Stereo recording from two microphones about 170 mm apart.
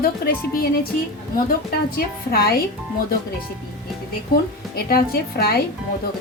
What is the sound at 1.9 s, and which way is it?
Speech, 65° left (ahead or behind).